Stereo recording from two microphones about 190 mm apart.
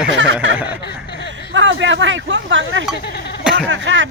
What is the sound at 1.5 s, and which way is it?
Speech, 75° right (ahead or behind).